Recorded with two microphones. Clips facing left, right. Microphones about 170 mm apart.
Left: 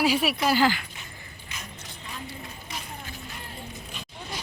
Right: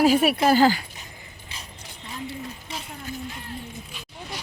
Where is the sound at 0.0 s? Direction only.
50° right (ahead or behind).